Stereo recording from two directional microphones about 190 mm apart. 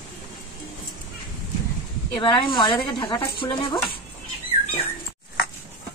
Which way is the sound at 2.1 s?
25° left (ahead or behind).